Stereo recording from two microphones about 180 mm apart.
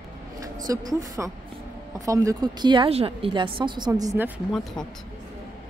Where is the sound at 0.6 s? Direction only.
20° right (ahead or behind).